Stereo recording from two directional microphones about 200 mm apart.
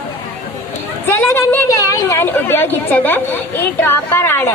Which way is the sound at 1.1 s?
10° left (ahead or behind).